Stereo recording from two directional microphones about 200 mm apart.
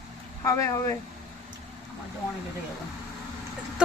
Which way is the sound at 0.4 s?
15° left (ahead or behind).